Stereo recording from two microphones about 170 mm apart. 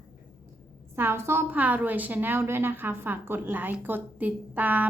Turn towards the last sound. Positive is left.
turn(degrees=-10)  # may be behind; listen again after turning